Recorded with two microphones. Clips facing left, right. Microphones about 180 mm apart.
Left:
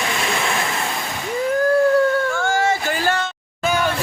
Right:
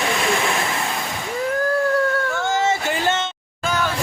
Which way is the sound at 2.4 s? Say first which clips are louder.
Left 1 dB; 20° right (ahead or behind).